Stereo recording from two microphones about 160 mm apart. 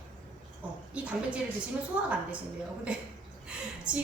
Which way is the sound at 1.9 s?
5° right (ahead or behind).